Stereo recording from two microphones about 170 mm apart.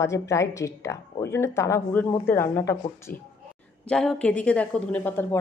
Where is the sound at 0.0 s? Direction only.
15° left (ahead or behind).